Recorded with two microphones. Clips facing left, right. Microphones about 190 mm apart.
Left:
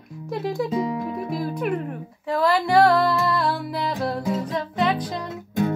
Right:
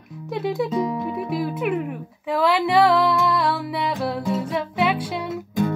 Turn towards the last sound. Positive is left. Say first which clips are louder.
# right 1 dB
turn(degrees=0)  # may be behind; listen again after turning